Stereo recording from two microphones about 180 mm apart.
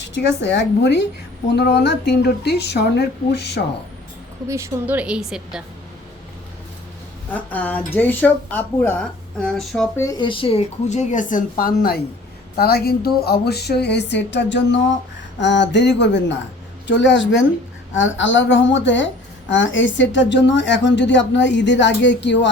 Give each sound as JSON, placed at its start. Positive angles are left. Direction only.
{"t": 0.1, "sound": "a woman's voice", "side_deg": 70}
{"t": 4.4, "sound": "a woman's voice", "side_deg": -15}
{"t": 7.3, "sound": "speech", "side_deg": 10}
{"t": 10.0, "sound": "a woman's voice", "side_deg": 20}
{"t": 16.8, "sound": "a woman's voice", "side_deg": 90}